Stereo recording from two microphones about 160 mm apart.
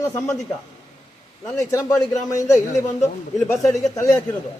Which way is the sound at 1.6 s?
20° left (ahead or behind).